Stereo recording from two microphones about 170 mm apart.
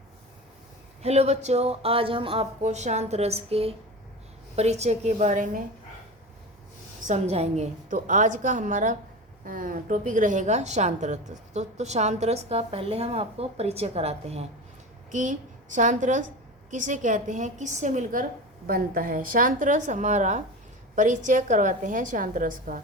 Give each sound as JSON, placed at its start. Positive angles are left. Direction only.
{"t": 1.0, "sound": "a woman's voice", "side_deg": -40}
{"t": 7.1, "sound": "a woman's voice", "side_deg": -40}